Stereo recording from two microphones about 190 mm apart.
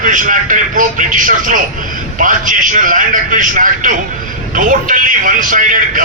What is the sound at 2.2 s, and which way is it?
A man's voice, 45° right (ahead or behind).